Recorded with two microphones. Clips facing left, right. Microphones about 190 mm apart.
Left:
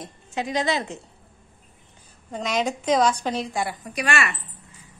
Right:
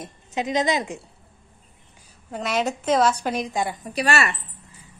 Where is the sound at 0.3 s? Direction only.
20° right (ahead or behind).